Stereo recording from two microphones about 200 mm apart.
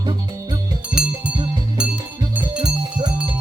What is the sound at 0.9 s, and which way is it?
Music, 5° right (ahead or behind).